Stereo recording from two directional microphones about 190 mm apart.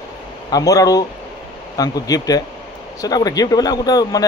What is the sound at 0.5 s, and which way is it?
Speech, 20° left (ahead or behind).